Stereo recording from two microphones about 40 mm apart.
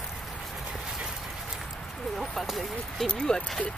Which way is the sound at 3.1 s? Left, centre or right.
Left.